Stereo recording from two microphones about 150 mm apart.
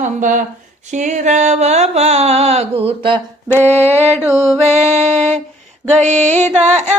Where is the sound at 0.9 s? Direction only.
55° right (ahead or behind); by 3.2 s 35° right (ahead or behind).